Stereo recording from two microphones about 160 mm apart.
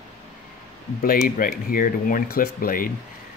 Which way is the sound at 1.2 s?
65° left (ahead or behind).